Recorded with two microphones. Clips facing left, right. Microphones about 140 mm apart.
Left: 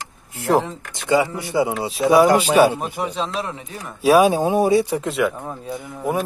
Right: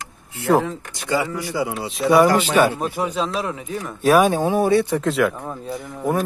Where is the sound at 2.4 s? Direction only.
10° left (ahead or behind).